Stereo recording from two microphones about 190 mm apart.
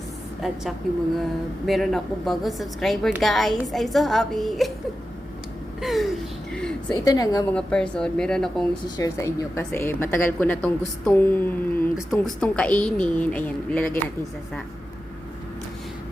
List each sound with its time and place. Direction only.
0.4 s a woman's voice: centre (ahead or behind)
1.6 s a woman's voice: centre (ahead or behind)
5.8 s a woman's voice: centre (ahead or behind)
6.5 s a sound: 5° left (ahead or behind)
7.0 s a woman's voice: 20° left (ahead or behind)
7.5 s a woman's voice: 5° left (ahead or behind)
9.0 s a woman's voice: 15° left (ahead or behind)